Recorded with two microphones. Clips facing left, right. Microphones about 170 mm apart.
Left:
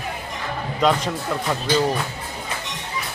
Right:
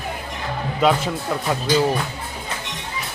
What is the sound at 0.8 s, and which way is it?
Speech, 5° right (ahead or behind).